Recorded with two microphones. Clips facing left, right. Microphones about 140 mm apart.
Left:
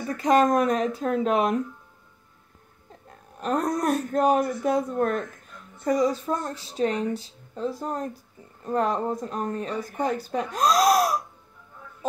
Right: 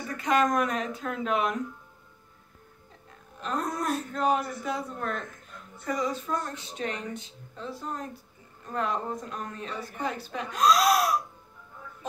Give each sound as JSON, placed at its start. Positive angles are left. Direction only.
{"t": 0.2, "sound": "speech", "side_deg": 35}
{"t": 3.3, "sound": "speech", "side_deg": 45}
{"t": 5.9, "sound": "speech", "side_deg": 40}